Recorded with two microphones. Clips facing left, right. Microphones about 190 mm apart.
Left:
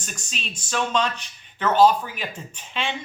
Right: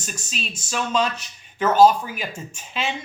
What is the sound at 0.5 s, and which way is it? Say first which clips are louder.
Speech: even; 5° right (ahead or behind).